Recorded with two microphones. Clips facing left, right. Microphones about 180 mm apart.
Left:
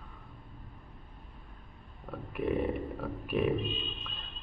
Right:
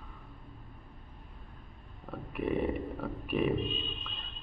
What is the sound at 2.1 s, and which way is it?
A man's voice, centre (ahead or behind).